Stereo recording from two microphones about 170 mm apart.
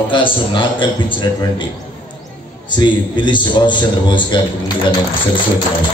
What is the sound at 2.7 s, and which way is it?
A man's voice, 25° left (ahead or behind).